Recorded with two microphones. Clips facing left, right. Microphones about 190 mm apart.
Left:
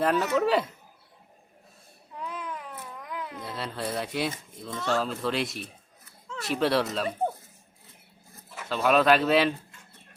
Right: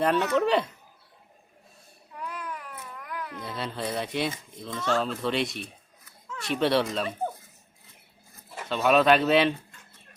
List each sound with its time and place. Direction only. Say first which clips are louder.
0.0 s speech: right 1 dB; centre (ahead or behind)
2.2 s baby cry: even; 20° left (ahead or behind)
3.1 s a sound: even; 20° left (ahead or behind)
3.4 s speech: right 1 dB; centre (ahead or behind)
8.7 s speech: right 1 dB; centre (ahead or behind)